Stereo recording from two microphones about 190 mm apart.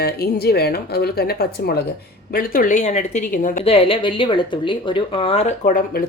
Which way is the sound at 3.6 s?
30° left (ahead or behind).